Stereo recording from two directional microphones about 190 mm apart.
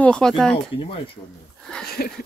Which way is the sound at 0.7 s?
25° left (ahead or behind).